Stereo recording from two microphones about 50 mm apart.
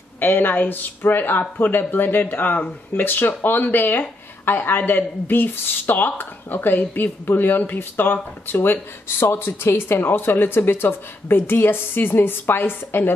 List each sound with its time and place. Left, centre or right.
0.2 s speech: left